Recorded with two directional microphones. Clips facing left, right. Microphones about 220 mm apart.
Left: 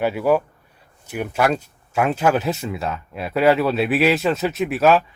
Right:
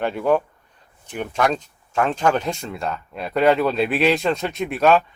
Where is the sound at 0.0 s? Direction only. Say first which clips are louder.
Left 1 dB; 5° left (ahead or behind).